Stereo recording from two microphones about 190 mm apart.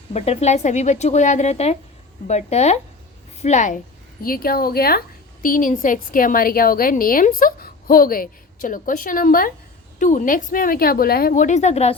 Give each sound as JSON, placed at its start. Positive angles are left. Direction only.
{"t": 0.1, "sound": "a woman's voice", "side_deg": 35}
{"t": 4.2, "sound": "a woman's voice", "side_deg": 50}